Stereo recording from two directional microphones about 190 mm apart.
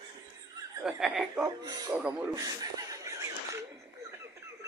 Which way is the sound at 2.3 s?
20° right (ahead or behind).